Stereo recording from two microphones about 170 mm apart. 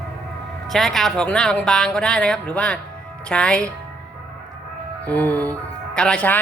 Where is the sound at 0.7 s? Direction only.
Centre (ahead or behind).